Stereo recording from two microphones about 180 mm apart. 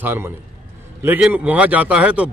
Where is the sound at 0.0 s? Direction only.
10° right (ahead or behind).